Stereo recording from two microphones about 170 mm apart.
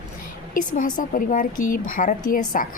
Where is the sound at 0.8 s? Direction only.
50° left (ahead or behind).